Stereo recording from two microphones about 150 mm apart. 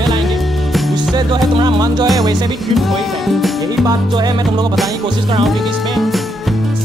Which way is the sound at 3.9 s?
30° right (ahead or behind).